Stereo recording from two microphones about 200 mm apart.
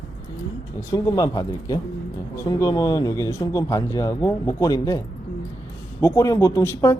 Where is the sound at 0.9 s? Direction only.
20° left (ahead or behind).